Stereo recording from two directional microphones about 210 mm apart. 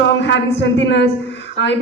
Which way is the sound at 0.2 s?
60° left (ahead or behind).